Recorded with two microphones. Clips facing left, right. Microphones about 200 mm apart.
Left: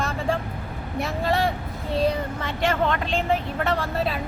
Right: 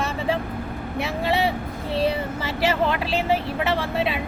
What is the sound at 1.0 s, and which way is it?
Speech, centre (ahead or behind).